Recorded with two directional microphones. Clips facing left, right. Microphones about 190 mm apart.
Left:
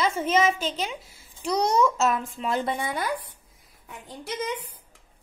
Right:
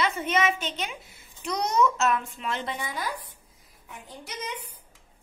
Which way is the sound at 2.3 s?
40° left (ahead or behind).